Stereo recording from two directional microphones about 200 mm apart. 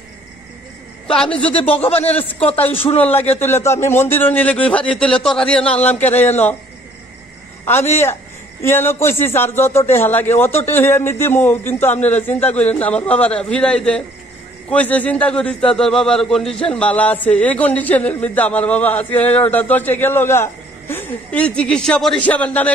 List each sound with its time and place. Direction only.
1.0 s speech: 5° left (ahead or behind)
1.5 s a man's voice: 30° left (ahead or behind)
3.0 s a man's voice: 10° left (ahead or behind)
7.6 s a man's voice: 10° left (ahead or behind)